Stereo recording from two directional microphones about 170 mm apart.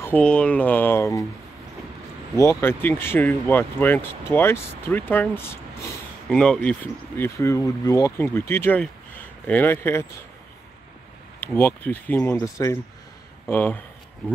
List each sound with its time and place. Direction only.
0.0 s speech: 10° left (ahead or behind)
2.3 s speech: 15° left (ahead or behind)
11.3 s speech: 10° left (ahead or behind)
13.5 s speech: 10° left (ahead or behind)